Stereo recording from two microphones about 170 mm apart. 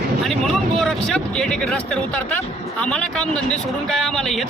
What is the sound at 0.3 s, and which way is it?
Speech, centre (ahead or behind).